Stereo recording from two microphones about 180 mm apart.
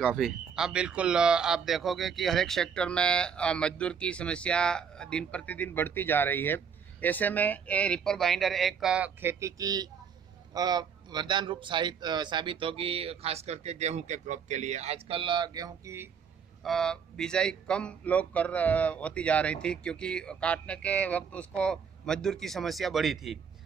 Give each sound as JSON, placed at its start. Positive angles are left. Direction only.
{"t": 0.0, "sound": "speech", "side_deg": 0}
{"t": 16.6, "sound": "speech", "side_deg": 0}